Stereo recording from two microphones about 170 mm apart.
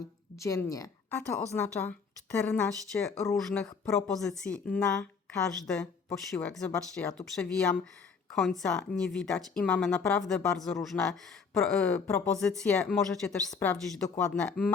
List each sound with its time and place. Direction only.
0.3 s a woman's voice: 20° left (ahead or behind)